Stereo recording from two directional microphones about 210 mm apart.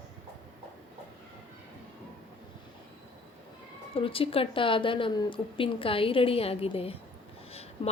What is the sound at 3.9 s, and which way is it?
A woman's voice, 25° left (ahead or behind).